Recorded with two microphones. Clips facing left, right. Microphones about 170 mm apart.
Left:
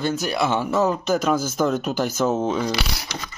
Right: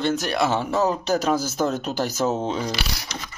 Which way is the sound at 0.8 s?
35° right (ahead or behind).